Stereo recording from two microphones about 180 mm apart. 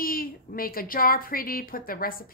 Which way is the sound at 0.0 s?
55° left (ahead or behind).